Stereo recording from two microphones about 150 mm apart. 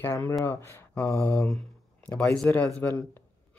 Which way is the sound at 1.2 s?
5° left (ahead or behind).